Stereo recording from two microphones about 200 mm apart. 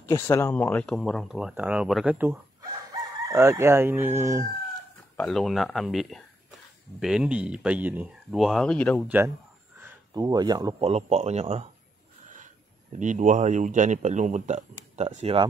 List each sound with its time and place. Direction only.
0.1 s speech: 15° left (ahead or behind); by 2.3 s 10° right (ahead or behind)
2.9 s chicken: 20° right (ahead or behind)
5.1 s speech: centre (ahead or behind)
9.0 s speech: 10° right (ahead or behind)
10.8 s speech: 35° right (ahead or behind)
13.0 s speech: 40° right (ahead or behind)